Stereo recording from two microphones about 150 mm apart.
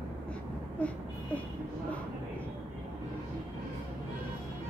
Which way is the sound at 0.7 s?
10° left (ahead or behind).